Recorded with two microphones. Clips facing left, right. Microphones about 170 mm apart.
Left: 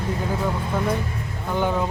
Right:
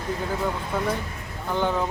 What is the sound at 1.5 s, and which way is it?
Speech, 10° left (ahead or behind).